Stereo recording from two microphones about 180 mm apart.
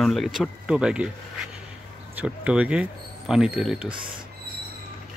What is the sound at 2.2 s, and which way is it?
Speech, 5° right (ahead or behind).